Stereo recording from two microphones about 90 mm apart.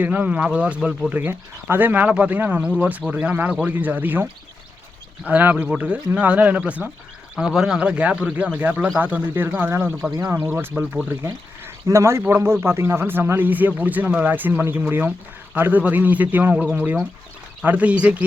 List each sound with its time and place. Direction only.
0.0 s speech: 20° right (ahead or behind)
1.1 s speech: 20° right (ahead or behind)
7.3 s a man's voice: 5° right (ahead or behind)